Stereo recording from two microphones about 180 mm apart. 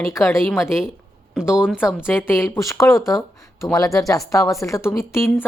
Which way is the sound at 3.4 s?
20° left (ahead or behind).